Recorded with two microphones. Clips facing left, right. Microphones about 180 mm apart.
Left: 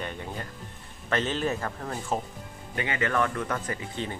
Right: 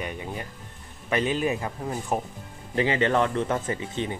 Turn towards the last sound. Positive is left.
turn(degrees=-20)  # may be behind; listen again after turning